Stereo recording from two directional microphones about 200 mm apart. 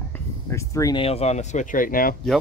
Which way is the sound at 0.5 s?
15° left (ahead or behind).